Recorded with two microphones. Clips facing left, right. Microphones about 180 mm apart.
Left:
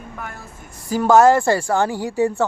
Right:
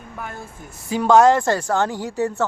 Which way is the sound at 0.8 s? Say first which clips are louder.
Left 1 dB; 5° left (ahead or behind).